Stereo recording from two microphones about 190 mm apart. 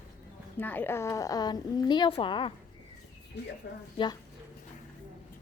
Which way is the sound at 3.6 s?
60° left (ahead or behind).